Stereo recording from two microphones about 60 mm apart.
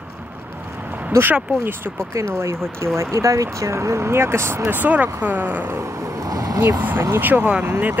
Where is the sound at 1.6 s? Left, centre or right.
Right.